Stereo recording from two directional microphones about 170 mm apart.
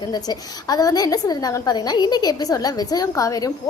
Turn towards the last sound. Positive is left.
turn(degrees=20)  # may be behind; listen again after turning